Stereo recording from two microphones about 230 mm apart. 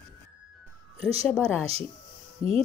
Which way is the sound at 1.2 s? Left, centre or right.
Centre.